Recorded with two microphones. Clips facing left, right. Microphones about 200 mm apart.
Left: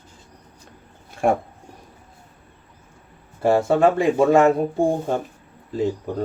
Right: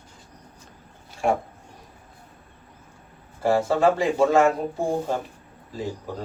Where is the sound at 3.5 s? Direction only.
50° left (ahead or behind).